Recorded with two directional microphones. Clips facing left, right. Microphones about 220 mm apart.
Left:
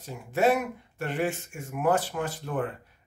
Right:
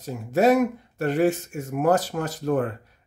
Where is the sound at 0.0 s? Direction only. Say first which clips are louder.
Right 5 dB; 40° right (ahead or behind).